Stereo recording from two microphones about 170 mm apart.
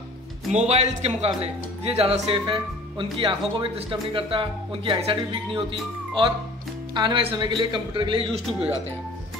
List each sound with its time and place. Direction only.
0.5 s a man's voice: 40° right (ahead or behind)